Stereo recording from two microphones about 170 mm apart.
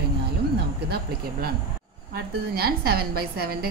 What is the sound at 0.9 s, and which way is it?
A woman's voice, 65° right (ahead or behind).